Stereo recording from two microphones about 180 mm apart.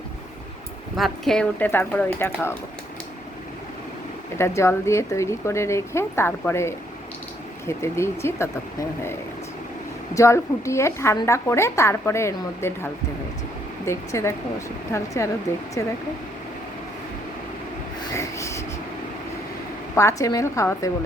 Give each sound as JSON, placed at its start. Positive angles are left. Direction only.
{"t": 0.9, "sound": "a woman's voice", "side_deg": 0}
{"t": 4.4, "sound": "a woman's voice", "side_deg": 15}
{"t": 10.2, "sound": "a woman's voice", "side_deg": 15}
{"t": 18.2, "sound": "rub", "side_deg": 15}
{"t": 20.0, "sound": "a woman's voice", "side_deg": 15}